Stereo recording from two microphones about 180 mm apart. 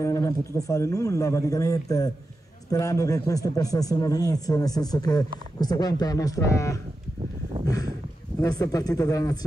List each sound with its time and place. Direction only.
0.0 s speech: 15° left (ahead or behind)
8.4 s speech: 20° left (ahead or behind)